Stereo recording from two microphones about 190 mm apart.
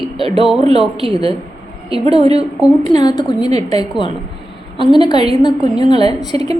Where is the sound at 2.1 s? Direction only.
30° right (ahead or behind).